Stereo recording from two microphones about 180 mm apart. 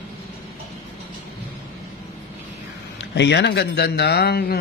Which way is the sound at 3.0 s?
75° left (ahead or behind).